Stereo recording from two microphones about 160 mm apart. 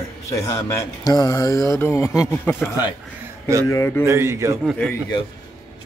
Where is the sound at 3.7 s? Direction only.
15° left (ahead or behind).